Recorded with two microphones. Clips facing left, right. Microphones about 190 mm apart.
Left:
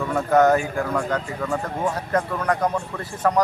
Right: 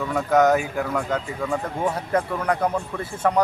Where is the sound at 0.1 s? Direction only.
Centre (ahead or behind).